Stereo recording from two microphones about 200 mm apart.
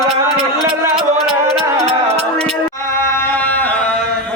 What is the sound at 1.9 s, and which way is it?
Music, 30° right (ahead or behind).